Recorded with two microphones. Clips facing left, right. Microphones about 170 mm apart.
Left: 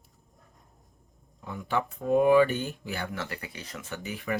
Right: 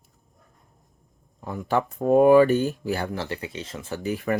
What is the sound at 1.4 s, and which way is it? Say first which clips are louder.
Speech: right 5 dB; 40° right (ahead or behind).